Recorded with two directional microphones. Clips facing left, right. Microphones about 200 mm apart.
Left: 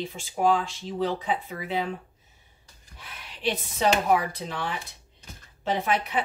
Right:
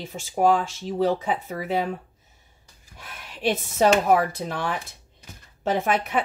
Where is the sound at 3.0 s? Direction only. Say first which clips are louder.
Right 8 dB; 50° right (ahead or behind).